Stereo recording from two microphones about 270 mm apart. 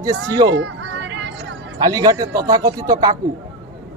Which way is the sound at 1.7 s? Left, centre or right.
Centre.